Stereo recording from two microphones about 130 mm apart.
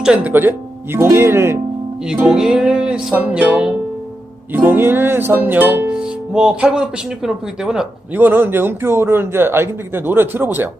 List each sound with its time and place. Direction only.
0.0 s speech: 10° right (ahead or behind)
2.0 s music: 5° right (ahead or behind)
8.2 s music: 15° right (ahead or behind)